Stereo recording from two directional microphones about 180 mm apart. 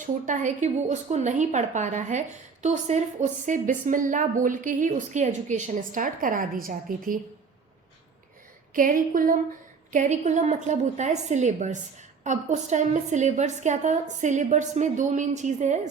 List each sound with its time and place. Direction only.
0.0 s a woman's voice: 45° right (ahead or behind)
8.7 s a woman's voice: 50° right (ahead or behind)